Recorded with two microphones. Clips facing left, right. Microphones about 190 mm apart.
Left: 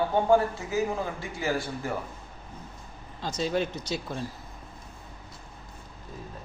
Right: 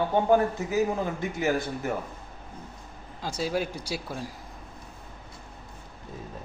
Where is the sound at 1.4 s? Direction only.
20° right (ahead or behind).